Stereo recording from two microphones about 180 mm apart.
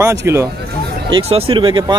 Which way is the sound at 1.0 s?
35° right (ahead or behind).